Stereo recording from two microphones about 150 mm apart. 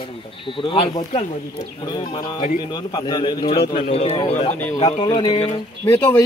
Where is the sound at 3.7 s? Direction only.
45° left (ahead or behind).